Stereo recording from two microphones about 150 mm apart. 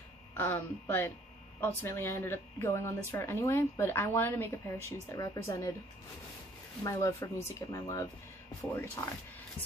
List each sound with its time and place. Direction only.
0.3 s speech: 15° left (ahead or behind)
6.8 s speech: 20° left (ahead or behind)